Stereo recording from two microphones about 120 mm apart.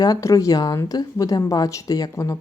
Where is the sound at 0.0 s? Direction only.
30° left (ahead or behind).